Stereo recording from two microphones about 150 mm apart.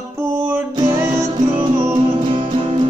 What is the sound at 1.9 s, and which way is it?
Music, 35° right (ahead or behind).